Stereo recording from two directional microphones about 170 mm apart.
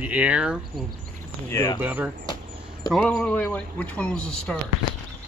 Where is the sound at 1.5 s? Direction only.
20° left (ahead or behind).